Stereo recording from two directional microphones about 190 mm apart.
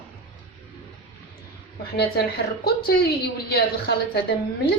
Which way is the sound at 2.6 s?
55° left (ahead or behind).